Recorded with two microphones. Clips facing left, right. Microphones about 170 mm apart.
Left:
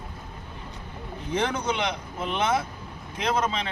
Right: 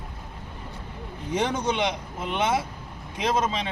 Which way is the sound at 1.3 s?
20° right (ahead or behind).